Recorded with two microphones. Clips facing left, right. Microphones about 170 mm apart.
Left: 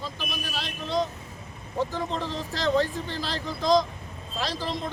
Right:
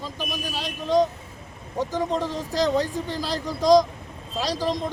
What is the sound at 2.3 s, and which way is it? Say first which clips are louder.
Speech: right 4 dB; 40° right (ahead or behind).